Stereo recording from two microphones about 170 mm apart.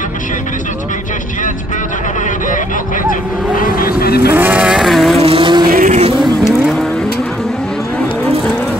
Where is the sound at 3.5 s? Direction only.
55° left (ahead or behind).